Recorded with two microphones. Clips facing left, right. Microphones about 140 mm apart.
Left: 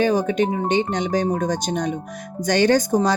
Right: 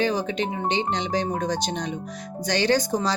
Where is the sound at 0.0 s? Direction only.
50° left (ahead or behind).